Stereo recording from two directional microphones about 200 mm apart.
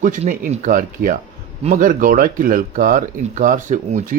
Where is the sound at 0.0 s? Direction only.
40° right (ahead or behind).